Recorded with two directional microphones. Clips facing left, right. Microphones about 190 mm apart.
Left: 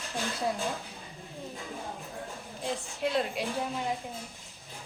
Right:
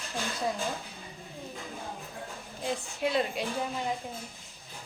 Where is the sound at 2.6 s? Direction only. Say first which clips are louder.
Right 1 dB; centre (ahead or behind).